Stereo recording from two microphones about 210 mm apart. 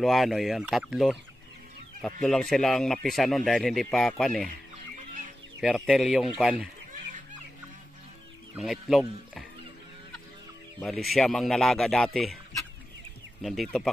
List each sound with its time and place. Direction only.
0.0 s speech: centre (ahead or behind)
2.2 s speech: 5° left (ahead or behind)
5.9 s speech: centre (ahead or behind)
8.5 s speech: centre (ahead or behind)
10.8 s speech: centre (ahead or behind)
13.4 s speech: centre (ahead or behind)